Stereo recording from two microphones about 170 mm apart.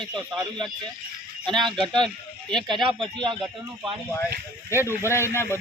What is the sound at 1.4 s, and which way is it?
Speech, 25° right (ahead or behind).